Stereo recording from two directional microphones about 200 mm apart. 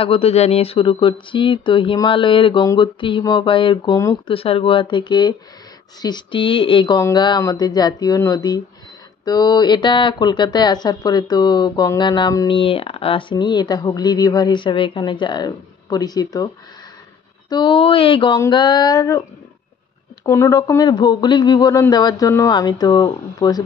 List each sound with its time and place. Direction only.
0.0 s speech: 30° left (ahead or behind)
4.3 s speech: 30° left (ahead or behind)
17.5 s speech: 25° left (ahead or behind)
20.2 s speech: 15° left (ahead or behind)